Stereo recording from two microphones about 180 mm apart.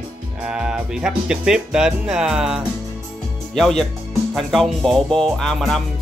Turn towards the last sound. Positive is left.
turn(degrees=0)  # may be behind; listen again after turning